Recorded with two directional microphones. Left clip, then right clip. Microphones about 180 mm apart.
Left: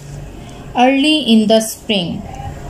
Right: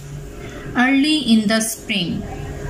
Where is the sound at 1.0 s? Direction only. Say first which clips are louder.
Left 4 dB; 20° left (ahead or behind).